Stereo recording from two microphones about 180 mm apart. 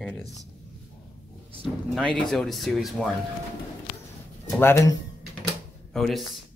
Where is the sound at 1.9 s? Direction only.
Centre (ahead or behind).